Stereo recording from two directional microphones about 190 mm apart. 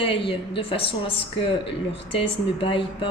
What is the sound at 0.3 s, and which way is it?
Speech, 30° left (ahead or behind).